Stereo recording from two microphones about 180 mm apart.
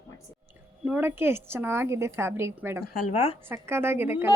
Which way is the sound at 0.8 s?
10° right (ahead or behind).